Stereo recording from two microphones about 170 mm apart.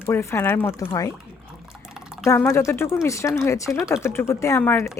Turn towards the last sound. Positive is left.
turn(degrees=15)  # may be behind; listen again after turning